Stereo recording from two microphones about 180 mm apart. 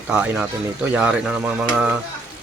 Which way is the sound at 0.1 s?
5° right (ahead or behind).